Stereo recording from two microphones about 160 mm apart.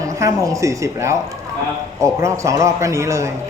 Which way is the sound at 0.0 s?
20° right (ahead or behind).